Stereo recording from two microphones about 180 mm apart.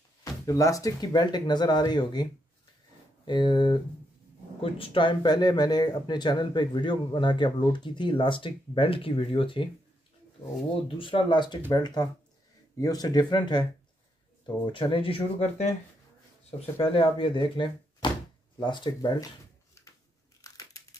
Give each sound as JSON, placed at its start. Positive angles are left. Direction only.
{"t": 0.2, "sound": "speech", "side_deg": 20}
{"t": 3.3, "sound": "speech", "side_deg": 25}
{"t": 11.0, "sound": "speech", "side_deg": 30}
{"t": 20.4, "sound": "crushing", "side_deg": 20}